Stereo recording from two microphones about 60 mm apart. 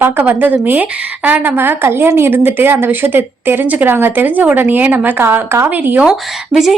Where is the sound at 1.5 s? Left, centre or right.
Right.